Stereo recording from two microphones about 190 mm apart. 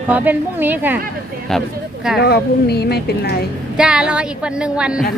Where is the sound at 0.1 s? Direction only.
10° right (ahead or behind).